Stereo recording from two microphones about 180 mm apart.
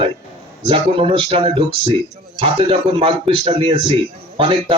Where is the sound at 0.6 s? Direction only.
30° right (ahead or behind).